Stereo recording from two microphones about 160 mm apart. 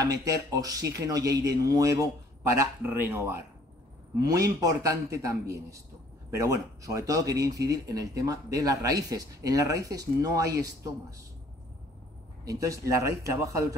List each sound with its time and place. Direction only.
0.0 s speech: 20° right (ahead or behind)
12.4 s speech: 20° right (ahead or behind)